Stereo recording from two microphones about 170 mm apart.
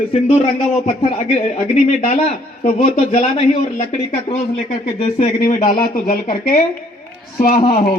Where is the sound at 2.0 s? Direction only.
45° left (ahead or behind).